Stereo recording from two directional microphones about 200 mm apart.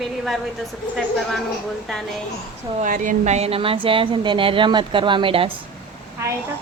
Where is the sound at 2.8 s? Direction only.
40° right (ahead or behind).